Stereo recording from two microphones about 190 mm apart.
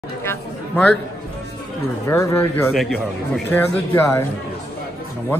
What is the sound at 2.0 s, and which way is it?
Speech, 15° left (ahead or behind).